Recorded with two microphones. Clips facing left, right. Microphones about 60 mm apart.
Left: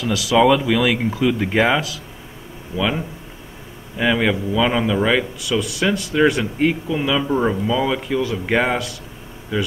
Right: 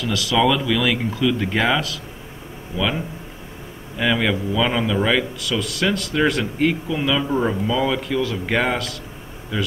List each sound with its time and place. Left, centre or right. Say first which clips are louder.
0.1 s speech: left 5 dB; centre
0.7 s speech: left 2 dB; left
4.0 s speech: left 2 dB; centre